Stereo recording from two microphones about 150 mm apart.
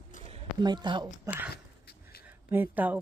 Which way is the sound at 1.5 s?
90° left.